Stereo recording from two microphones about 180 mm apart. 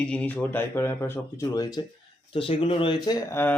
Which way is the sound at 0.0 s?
5° left (ahead or behind).